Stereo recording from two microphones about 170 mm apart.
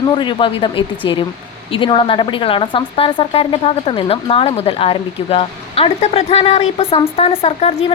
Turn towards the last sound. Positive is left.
turn(degrees=35)  # may be behind; listen again after turning